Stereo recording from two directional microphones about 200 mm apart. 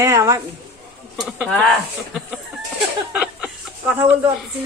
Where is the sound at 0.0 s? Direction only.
15° right (ahead or behind).